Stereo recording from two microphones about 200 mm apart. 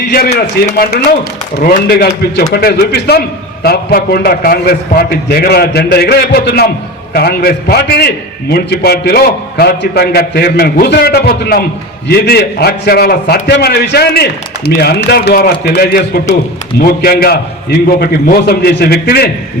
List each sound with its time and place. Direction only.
0.1 s a man's voice: 50° left (ahead or behind)